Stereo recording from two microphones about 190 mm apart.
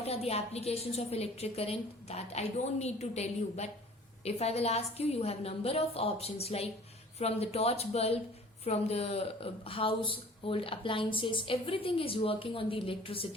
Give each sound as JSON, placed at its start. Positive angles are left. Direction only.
{"t": 0.0, "sound": "a woman's voice", "side_deg": 35}